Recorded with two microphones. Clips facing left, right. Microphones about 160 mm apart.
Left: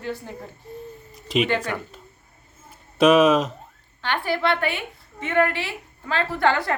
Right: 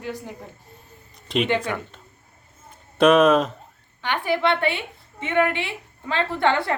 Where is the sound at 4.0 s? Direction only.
15° right (ahead or behind).